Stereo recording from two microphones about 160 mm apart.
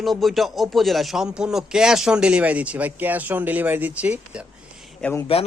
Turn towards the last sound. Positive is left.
turn(degrees=10)  # may be behind; listen again after turning